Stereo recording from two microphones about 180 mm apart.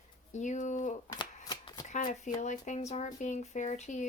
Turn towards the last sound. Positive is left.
turn(degrees=40)  # may be behind; listen again after turning